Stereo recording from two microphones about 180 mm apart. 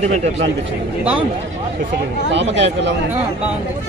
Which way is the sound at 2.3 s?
80° right.